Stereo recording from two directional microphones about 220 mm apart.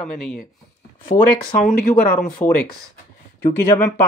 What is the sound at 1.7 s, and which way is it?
Speech, 40° left (ahead or behind).